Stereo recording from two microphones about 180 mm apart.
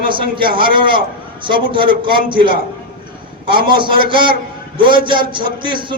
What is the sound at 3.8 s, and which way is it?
A man's voice, 25° right (ahead or behind).